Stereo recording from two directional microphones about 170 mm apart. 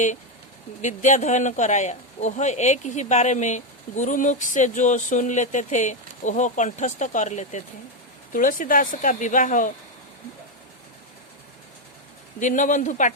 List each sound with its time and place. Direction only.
0.8 s a man's voice: 45° left (ahead or behind)
12.4 s a man's voice: 50° left (ahead or behind)